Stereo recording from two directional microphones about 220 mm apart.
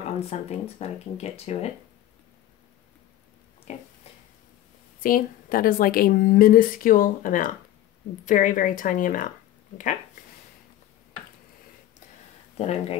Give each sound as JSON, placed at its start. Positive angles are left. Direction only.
{"t": 0.3, "sound": "speech", "side_deg": 30}
{"t": 3.7, "sound": "a woman's voice", "side_deg": 30}
{"t": 5.0, "sound": "a woman's voice", "side_deg": 40}
{"t": 12.5, "sound": "speech", "side_deg": 30}